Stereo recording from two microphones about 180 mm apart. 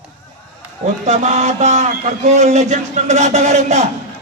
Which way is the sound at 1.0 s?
40° right (ahead or behind).